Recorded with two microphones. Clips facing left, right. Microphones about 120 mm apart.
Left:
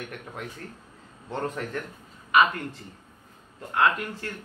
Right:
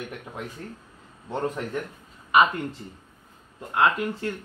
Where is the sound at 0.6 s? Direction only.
15° right (ahead or behind).